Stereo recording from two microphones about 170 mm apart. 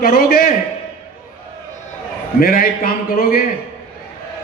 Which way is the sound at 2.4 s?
60° left (ahead or behind).